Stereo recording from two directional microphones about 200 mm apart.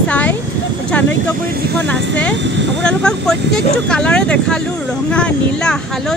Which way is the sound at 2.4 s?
60° right (ahead or behind).